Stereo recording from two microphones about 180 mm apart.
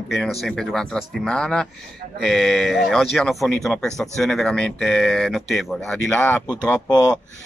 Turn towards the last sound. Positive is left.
turn(degrees=25)  # may be behind; listen again after turning